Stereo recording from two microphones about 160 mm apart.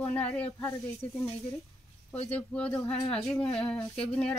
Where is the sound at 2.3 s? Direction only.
5° left (ahead or behind).